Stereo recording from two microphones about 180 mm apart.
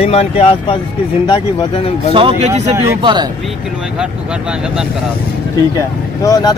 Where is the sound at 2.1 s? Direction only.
30° right (ahead or behind).